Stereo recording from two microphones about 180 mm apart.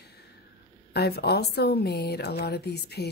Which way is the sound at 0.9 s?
60° left (ahead or behind).